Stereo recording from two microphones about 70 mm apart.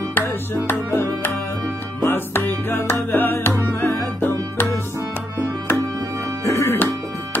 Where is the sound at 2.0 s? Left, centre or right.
Left.